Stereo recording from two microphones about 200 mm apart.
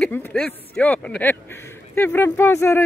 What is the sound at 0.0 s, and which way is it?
Speech, 5° left (ahead or behind).